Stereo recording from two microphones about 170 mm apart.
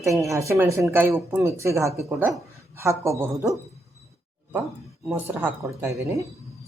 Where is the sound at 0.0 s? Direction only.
15° right (ahead or behind).